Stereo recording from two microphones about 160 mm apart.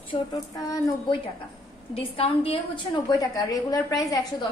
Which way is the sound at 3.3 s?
20° left (ahead or behind).